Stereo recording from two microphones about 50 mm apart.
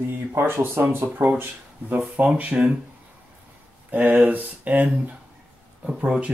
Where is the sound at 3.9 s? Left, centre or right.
Right.